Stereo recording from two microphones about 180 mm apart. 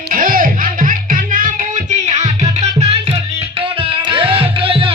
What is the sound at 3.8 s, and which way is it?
Music, 30° right (ahead or behind).